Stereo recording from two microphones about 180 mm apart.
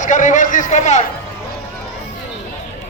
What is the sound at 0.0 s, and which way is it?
A man's voice, 45° left (ahead or behind).